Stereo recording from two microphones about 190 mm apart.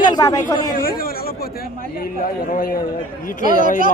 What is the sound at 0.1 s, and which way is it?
Speech, 20° left (ahead or behind).